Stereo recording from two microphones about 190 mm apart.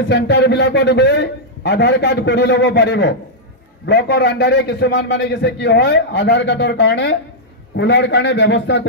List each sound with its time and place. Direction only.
0.0 s a man's voice: 65° left (ahead or behind)